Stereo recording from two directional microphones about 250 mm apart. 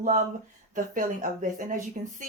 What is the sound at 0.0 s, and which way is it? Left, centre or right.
Speech, right.